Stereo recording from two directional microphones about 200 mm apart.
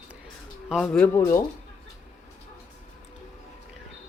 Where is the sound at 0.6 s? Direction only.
Centre (ahead or behind).